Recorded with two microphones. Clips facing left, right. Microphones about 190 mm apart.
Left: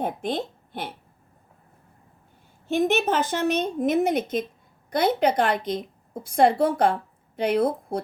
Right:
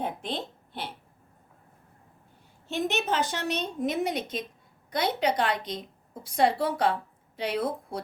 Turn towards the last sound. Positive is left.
turn(degrees=50)  # may be behind; listen again after turning